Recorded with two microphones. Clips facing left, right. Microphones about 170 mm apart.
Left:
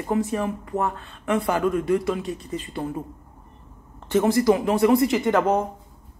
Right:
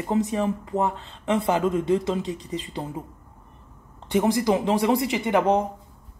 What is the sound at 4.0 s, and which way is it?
A woman's voice, 15° right (ahead or behind).